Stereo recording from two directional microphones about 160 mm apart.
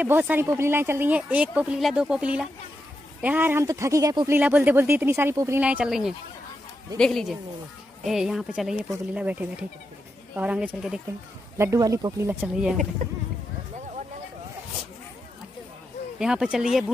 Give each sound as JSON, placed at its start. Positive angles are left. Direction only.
{"t": 0.0, "sound": "speech", "side_deg": -10}
{"t": 4.4, "sound": "speech", "side_deg": -10}
{"t": 5.6, "sound": "speech", "side_deg": -10}
{"t": 13.0, "sound": "speech", "side_deg": -45}
{"t": 16.2, "sound": "speech", "side_deg": -5}